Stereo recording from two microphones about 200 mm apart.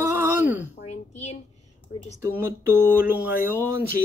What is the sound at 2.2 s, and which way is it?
Speech, 10° right (ahead or behind).